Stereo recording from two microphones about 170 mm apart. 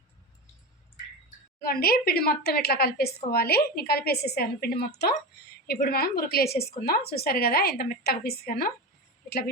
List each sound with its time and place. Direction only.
1.6 s a woman's voice: 65° left (ahead or behind)